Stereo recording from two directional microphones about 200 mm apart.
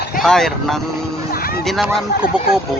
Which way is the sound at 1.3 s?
50° left (ahead or behind).